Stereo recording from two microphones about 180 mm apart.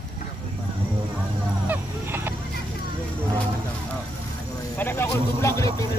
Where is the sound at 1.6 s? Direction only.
10° right (ahead or behind).